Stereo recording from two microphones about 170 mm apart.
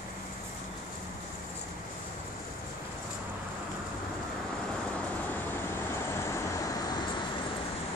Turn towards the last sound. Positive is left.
turn(degrees=20)  # may be behind; listen again after turning